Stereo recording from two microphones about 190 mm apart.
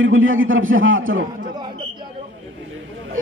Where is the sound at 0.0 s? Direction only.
90° right.